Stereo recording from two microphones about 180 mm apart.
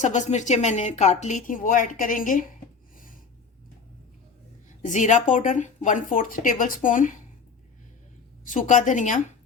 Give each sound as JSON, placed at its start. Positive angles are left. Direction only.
{"t": 0.0, "sound": "a woman's voice", "side_deg": 40}
{"t": 4.8, "sound": "speech", "side_deg": 45}
{"t": 8.4, "sound": "speech", "side_deg": 45}